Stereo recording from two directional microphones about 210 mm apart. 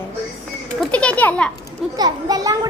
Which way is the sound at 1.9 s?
20° right (ahead or behind).